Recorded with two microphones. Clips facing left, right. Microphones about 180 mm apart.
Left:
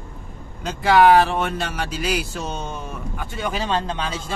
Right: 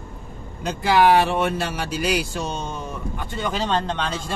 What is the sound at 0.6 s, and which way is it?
Speech, centre (ahead or behind).